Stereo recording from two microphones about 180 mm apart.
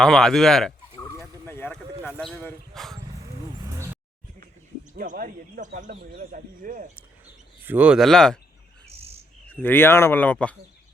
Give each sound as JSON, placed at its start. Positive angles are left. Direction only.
{"t": 0.0, "sound": "speech", "side_deg": 5}
{"t": 1.2, "sound": "a sound", "side_deg": 10}
{"t": 2.3, "sound": "speech", "side_deg": 10}
{"t": 3.6, "sound": "a sound", "side_deg": -15}
{"t": 4.9, "sound": "speech", "side_deg": -50}
{"t": 7.6, "sound": "speech", "side_deg": -10}
{"t": 9.5, "sound": "speech", "side_deg": 10}